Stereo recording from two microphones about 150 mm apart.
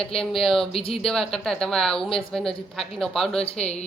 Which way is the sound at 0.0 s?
5° left (ahead or behind).